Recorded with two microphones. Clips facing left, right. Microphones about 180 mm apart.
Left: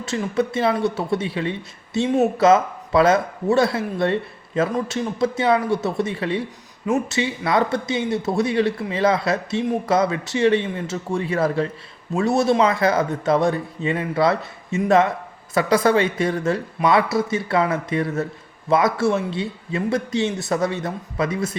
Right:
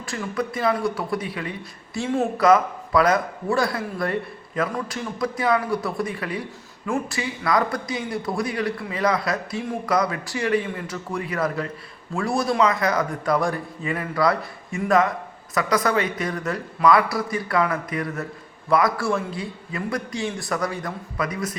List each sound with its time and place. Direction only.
0.0 s speech: 25° left (ahead or behind)